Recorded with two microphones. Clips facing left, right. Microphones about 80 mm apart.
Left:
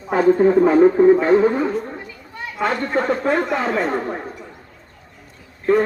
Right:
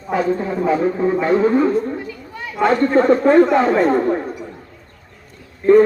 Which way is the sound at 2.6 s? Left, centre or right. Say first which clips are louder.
Right 6 dB; centre.